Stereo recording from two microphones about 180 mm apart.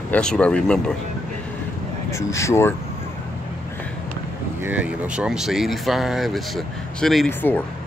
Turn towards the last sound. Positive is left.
turn(degrees=10)  # may be behind; listen again after turning